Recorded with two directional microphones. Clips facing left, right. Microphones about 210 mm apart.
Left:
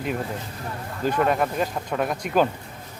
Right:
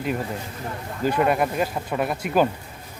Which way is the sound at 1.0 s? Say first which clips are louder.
Right 1 dB; 5° right (ahead or behind).